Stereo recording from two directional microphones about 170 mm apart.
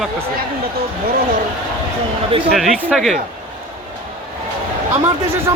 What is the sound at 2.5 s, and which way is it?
Speech, centre (ahead or behind).